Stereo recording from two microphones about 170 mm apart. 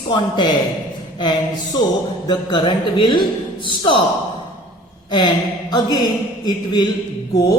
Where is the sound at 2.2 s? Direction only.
25° left (ahead or behind).